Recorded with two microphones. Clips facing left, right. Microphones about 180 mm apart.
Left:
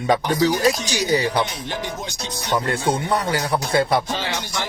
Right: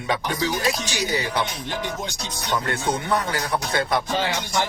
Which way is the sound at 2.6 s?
30° left (ahead or behind).